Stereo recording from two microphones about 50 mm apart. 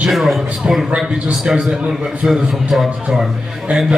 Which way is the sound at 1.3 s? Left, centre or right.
Centre.